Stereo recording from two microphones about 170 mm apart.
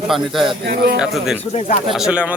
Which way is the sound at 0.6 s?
70° right (ahead or behind).